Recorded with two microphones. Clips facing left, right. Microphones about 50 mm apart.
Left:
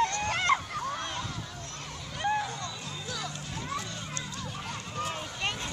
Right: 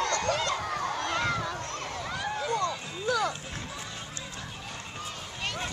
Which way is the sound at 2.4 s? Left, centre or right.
Right.